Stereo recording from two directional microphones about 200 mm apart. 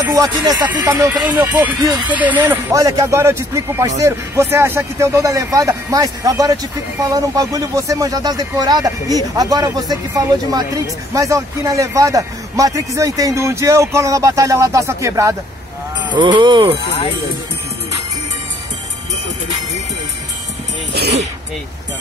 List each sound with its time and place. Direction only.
0.0 s speech: 15° right (ahead or behind)
2.1 s speech: 10° right (ahead or behind)
20.9 s speech: 55° right (ahead or behind)